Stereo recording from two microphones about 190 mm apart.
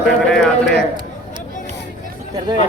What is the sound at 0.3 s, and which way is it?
Clip-clop, centre (ahead or behind).